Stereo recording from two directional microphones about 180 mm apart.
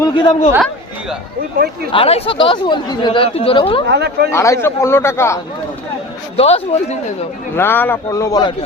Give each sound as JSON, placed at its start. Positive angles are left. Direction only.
{"t": 0.0, "sound": "speech", "side_deg": 25}
{"t": 1.5, "sound": "speech", "side_deg": -55}
{"t": 1.9, "sound": "speech", "side_deg": 30}
{"t": 3.8, "sound": "speech", "side_deg": -65}
{"t": 4.3, "sound": "a man's voice", "side_deg": 15}
{"t": 6.3, "sound": "a man's voice", "side_deg": 35}
{"t": 7.5, "sound": "a man's voice", "side_deg": 10}